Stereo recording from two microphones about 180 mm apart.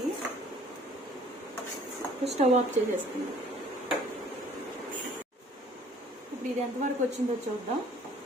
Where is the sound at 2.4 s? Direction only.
40° right (ahead or behind).